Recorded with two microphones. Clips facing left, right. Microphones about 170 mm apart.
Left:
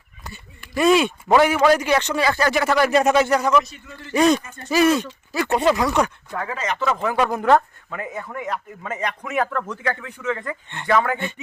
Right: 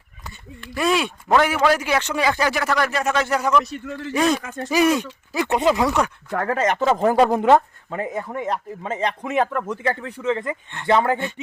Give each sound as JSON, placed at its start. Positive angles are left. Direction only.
{"t": 0.8, "sound": "a man's voice", "side_deg": 0}
{"t": 2.5, "sound": "a man's voice", "side_deg": 0}
{"t": 2.9, "sound": "speech", "side_deg": 20}
{"t": 3.2, "sound": "a man's voice", "side_deg": -5}
{"t": 3.7, "sound": "a man's voice", "side_deg": -75}
{"t": 4.1, "sound": "a man's voice", "side_deg": 0}
{"t": 4.4, "sound": "speech", "side_deg": -90}
{"t": 4.7, "sound": "speech", "side_deg": -15}
{"t": 6.3, "sound": "speech", "side_deg": -55}
{"t": 9.5, "sound": "speech", "side_deg": -15}
{"t": 9.8, "sound": "speech", "side_deg": -30}